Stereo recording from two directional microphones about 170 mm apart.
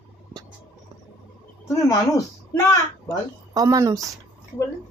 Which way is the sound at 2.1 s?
20° left (ahead or behind).